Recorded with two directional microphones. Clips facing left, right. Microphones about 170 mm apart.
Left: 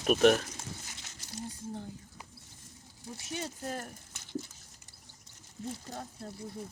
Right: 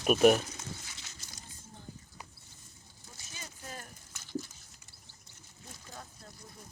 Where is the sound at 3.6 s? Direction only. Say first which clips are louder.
Left 4 dB; 45° left (ahead or behind).